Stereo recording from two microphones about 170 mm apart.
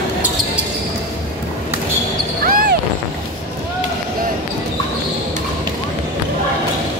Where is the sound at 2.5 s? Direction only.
55° right (ahead or behind).